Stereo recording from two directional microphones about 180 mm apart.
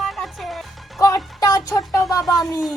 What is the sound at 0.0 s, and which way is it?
Music, centre (ahead or behind).